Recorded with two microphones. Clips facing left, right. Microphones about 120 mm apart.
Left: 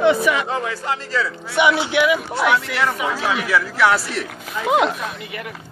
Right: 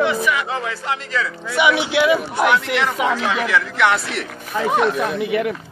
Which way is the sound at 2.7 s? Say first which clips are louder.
Right 2 dB; 5° left (ahead or behind).